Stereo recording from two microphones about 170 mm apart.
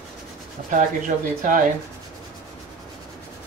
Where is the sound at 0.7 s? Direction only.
50° right (ahead or behind).